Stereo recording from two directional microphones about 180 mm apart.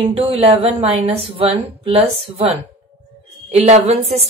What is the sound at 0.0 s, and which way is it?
A woman's voice, 30° right (ahead or behind).